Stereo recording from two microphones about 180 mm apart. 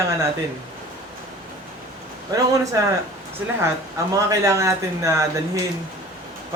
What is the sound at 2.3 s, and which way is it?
Speech, 20° right (ahead or behind).